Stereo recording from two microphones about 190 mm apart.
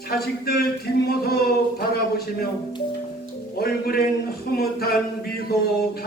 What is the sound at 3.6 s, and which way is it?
Speech, 55° left (ahead or behind).